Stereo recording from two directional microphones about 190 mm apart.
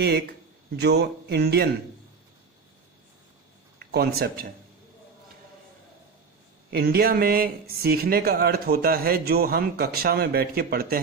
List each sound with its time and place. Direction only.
0.0 s speech: 60° right (ahead or behind)
3.8 s speech: 55° right (ahead or behind)
6.7 s speech: 55° right (ahead or behind)